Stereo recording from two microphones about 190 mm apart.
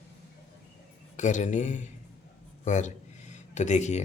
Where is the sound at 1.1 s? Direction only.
40° left (ahead or behind).